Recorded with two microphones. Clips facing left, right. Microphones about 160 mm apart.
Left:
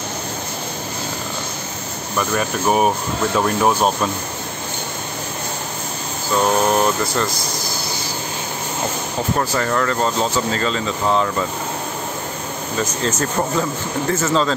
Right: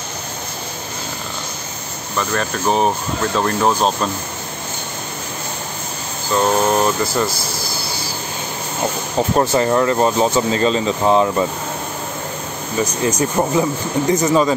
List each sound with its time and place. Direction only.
2.1 s speech: 10° left (ahead or behind)
6.3 s speech: centre (ahead or behind)
9.4 s speech: 25° right (ahead or behind)
12.8 s speech: 15° right (ahead or behind)